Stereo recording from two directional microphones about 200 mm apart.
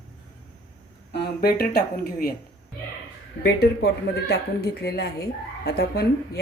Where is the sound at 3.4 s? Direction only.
55° left (ahead or behind).